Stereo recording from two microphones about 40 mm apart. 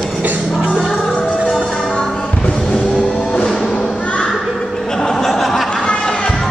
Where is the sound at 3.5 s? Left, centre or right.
Centre.